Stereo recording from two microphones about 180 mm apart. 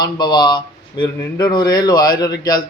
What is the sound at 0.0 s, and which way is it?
Speech, 25° left (ahead or behind).